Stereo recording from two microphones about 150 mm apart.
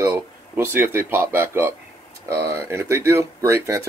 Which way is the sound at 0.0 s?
15° right (ahead or behind).